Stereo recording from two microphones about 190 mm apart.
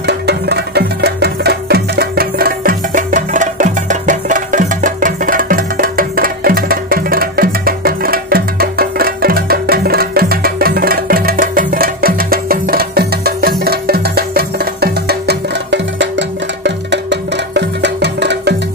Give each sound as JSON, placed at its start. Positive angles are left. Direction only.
{"t": 0.0, "sound": "music", "side_deg": -60}